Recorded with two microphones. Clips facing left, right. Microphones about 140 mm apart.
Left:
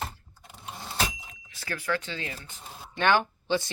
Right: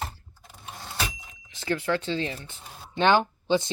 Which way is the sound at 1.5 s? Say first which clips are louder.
Right 5 dB; 25° right (ahead or behind).